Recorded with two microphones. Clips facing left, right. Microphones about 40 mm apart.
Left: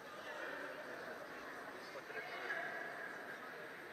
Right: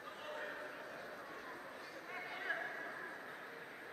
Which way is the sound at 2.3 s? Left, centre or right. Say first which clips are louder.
Right 3 dB; right.